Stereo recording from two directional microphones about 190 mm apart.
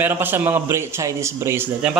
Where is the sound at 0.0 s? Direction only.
10° right (ahead or behind).